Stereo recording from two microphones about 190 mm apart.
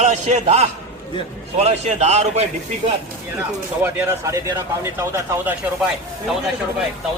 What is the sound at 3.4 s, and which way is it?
Speech, 10° right (ahead or behind).